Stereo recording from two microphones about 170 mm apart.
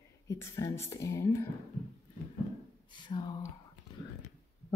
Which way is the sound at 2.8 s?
25° left (ahead or behind).